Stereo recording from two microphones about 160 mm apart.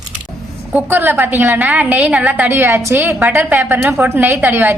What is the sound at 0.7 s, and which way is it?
A woman's voice, 10° right (ahead or behind).